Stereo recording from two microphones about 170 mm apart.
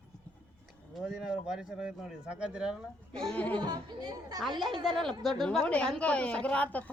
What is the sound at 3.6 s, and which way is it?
Speech, 25° right (ahead or behind).